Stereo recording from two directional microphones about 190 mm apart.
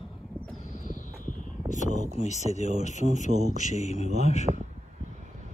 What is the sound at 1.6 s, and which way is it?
Speech, 40° left (ahead or behind).